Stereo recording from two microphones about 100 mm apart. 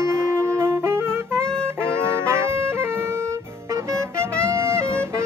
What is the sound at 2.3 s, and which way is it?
Music, 25° right (ahead or behind).